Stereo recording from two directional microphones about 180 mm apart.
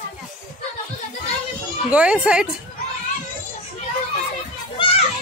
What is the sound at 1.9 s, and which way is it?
Speech, 5° right (ahead or behind).